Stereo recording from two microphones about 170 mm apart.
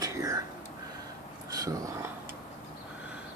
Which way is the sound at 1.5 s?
20° right (ahead or behind).